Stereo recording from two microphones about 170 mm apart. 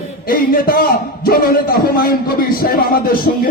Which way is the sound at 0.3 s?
60° left (ahead or behind).